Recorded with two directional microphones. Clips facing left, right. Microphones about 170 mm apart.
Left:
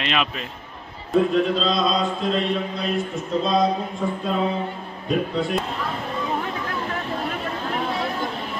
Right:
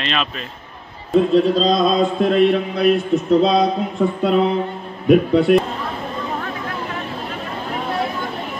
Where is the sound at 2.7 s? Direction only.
65° right (ahead or behind).